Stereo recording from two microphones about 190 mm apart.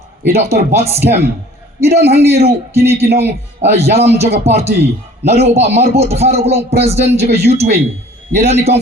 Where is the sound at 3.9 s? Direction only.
35° right (ahead or behind).